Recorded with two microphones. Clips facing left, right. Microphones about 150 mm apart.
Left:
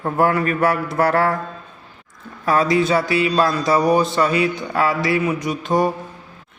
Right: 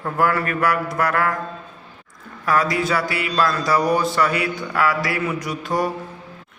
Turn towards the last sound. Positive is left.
turn(degrees=20)  # may be behind; listen again after turning